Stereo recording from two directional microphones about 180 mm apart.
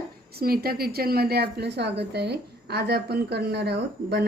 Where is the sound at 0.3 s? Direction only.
55° right (ahead or behind).